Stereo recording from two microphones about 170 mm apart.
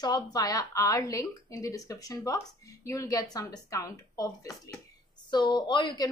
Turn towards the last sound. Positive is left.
turn(degrees=25)  # may be behind; listen again after turning